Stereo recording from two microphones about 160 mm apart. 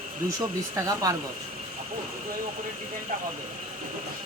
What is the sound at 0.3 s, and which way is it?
Speech, 20° right (ahead or behind).